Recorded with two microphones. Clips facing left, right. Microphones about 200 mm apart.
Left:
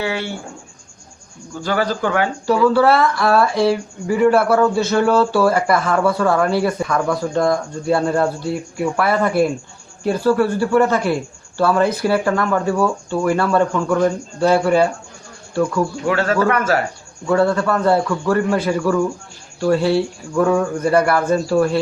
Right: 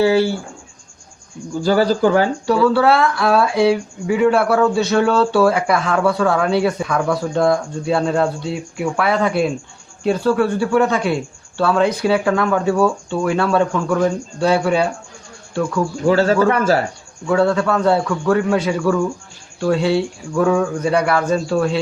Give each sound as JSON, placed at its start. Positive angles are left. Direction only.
{"t": 0.0, "sound": "speech", "side_deg": -30}
{"t": 1.6, "sound": "speech", "side_deg": -30}
{"t": 2.5, "sound": "a man's voice", "side_deg": 0}
{"t": 16.0, "sound": "a man's voice", "side_deg": -30}
{"t": 17.2, "sound": "a man's voice", "side_deg": 0}